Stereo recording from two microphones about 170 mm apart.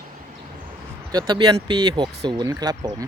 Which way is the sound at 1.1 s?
25° right (ahead or behind).